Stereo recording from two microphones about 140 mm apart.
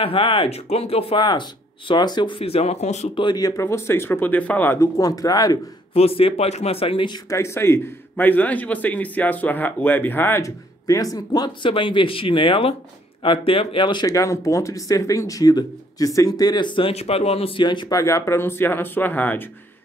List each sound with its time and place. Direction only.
0.0 s speech: 40° left (ahead or behind)
3.2 s a man's voice: 30° left (ahead or behind); by 4.8 s 15° left (ahead or behind)
4.9 s speech: 25° left (ahead or behind)
5.9 s speech: 45° left (ahead or behind)
7.2 s a man's voice: 20° left (ahead or behind)